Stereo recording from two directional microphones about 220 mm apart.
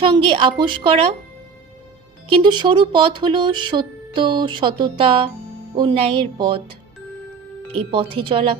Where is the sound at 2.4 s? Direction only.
20° right (ahead or behind).